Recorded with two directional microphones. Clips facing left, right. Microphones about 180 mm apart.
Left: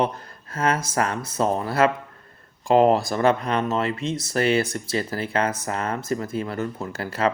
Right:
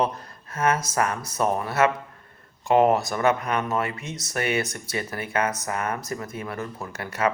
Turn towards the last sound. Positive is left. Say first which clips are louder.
# left 2 dB
turn(degrees=30)  # may be behind; listen again after turning